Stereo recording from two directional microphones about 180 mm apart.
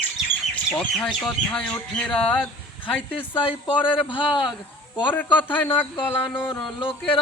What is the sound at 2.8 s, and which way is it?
Speech, 30° left (ahead or behind).